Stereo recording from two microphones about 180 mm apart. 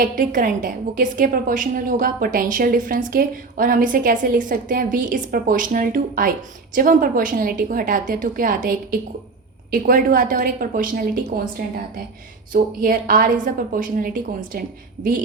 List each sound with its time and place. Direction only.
0.0 s a woman's voice: 45° right (ahead or behind)
12.5 s a woman's voice: 50° right (ahead or behind)